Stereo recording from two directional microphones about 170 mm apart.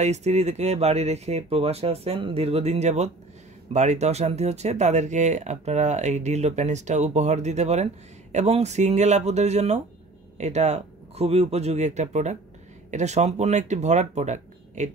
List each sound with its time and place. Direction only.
0.0 s speech: 40° right (ahead or behind)